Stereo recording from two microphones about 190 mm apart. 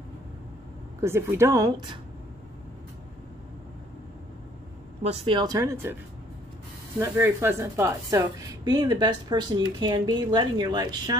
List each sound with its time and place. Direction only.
1.0 s a woman's voice: 15° right (ahead or behind)
5.0 s a woman's voice: 25° right (ahead or behind)
7.0 s a woman's voice: 10° right (ahead or behind)